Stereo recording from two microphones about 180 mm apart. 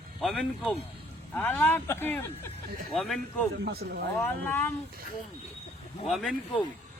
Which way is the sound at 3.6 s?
60° right (ahead or behind).